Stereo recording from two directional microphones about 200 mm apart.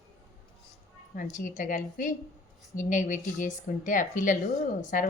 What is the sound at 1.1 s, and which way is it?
Speech, 40° left (ahead or behind).